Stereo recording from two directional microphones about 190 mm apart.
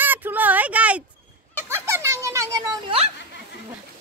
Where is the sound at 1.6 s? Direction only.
15° right (ahead or behind).